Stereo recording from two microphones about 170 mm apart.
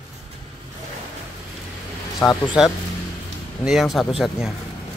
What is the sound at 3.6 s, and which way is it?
Speech, centre (ahead or behind).